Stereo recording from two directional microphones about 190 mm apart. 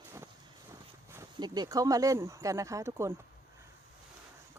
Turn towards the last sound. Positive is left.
turn(degrees=-15)  # may be behind; listen again after turning